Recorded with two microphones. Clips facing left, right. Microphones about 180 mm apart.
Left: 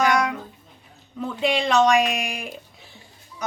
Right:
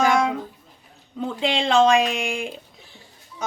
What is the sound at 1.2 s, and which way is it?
Speech, 25° right (ahead or behind).